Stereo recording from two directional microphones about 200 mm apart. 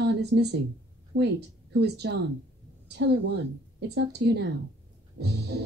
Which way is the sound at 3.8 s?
55° right (ahead or behind).